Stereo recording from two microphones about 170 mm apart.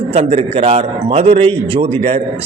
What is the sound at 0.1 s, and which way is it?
A man's voice, 40° right (ahead or behind).